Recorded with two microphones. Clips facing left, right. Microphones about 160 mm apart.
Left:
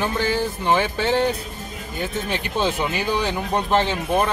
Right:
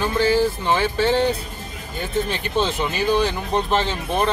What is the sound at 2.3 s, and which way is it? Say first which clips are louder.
Speech: right 1 dB; 15° left (ahead or behind).